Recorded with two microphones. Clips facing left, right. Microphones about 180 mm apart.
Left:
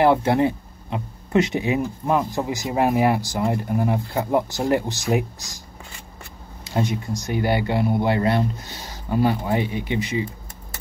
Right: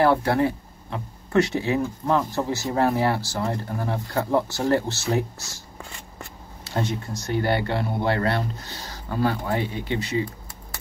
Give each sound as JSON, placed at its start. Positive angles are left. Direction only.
{"t": 0.0, "sound": "speech", "side_deg": 20}
{"t": 6.6, "sound": "speech", "side_deg": 15}